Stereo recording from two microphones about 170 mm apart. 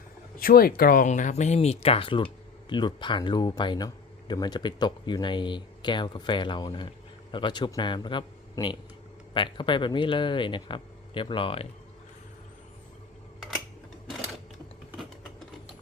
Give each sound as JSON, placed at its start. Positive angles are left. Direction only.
{"t": 0.3, "sound": "speech", "side_deg": 60}